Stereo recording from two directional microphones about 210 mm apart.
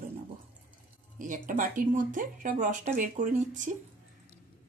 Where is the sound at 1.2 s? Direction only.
40° right (ahead or behind).